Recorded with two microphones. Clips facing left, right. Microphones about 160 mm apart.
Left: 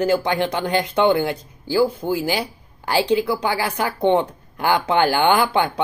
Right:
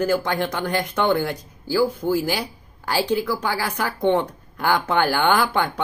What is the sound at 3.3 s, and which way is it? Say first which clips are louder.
Speech: left 3 dB; 15° left (ahead or behind).